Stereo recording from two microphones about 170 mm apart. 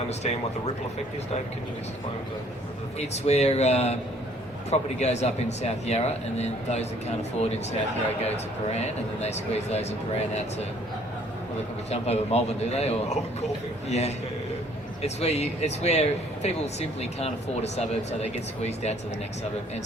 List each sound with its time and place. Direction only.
0.1 s speech: 40° left (ahead or behind)
3.0 s speech: 40° left (ahead or behind)
11.9 s speech: 40° left (ahead or behind)